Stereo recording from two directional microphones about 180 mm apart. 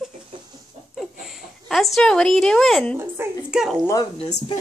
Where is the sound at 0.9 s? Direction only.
Centre (ahead or behind).